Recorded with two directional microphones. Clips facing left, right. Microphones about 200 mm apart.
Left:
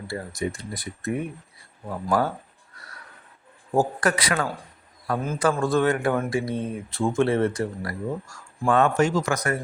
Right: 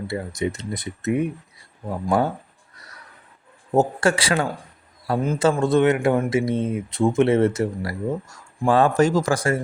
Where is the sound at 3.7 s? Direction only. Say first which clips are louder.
Right 3 dB; 25° right (ahead or behind).